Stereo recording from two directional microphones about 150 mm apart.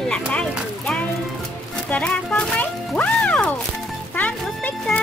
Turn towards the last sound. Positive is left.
turn(degrees=10)  # may be behind; listen again after turning